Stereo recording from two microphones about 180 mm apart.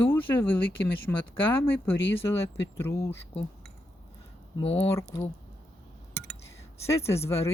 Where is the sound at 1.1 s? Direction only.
5° left (ahead or behind).